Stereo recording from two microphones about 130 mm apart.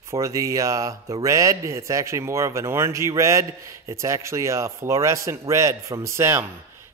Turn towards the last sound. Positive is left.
turn(degrees=-20)  # may be behind; listen again after turning